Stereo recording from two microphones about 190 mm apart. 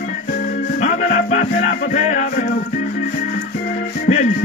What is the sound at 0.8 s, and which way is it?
Music, 45° left (ahead or behind).